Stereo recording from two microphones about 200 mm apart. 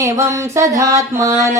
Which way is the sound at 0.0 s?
15° right (ahead or behind).